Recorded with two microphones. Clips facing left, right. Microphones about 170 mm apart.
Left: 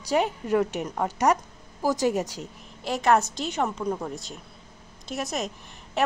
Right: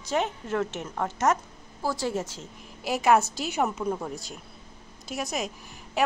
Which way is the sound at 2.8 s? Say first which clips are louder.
Even; 5° right (ahead or behind).